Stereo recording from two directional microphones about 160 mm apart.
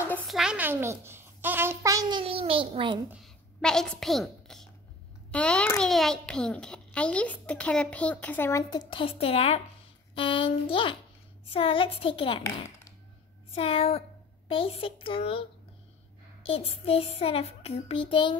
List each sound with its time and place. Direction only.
0.3 s a child's voice: 5° right (ahead or behind); by 3.0 s 30° right (ahead or behind)
3.6 s a woman's voice: 5° left (ahead or behind); by 9.6 s 40° left (ahead or behind)
10.1 s child singing: 30° left (ahead or behind)
16.4 s child singing: 35° left (ahead or behind)